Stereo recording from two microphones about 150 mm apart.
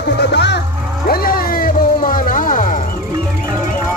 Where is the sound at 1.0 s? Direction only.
80° left; by 2.8 s 65° left (ahead or behind).